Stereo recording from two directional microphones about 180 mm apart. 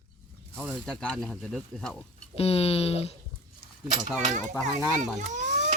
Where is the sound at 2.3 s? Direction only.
35° left (ahead or behind).